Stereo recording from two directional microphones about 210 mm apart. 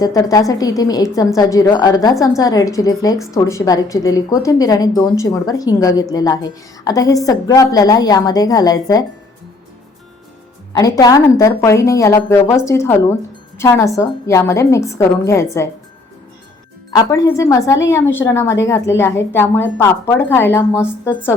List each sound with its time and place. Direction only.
0.0 s a woman's voice: 15° left (ahead or behind)
10.7 s a woman's voice: 15° left (ahead or behind)
16.9 s a woman's voice: 15° left (ahead or behind)